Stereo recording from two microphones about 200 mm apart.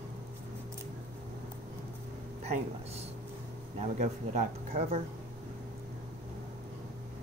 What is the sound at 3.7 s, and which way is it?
Speech, 35° right (ahead or behind).